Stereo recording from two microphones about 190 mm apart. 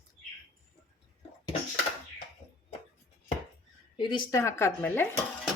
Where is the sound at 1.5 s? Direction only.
30° left (ahead or behind).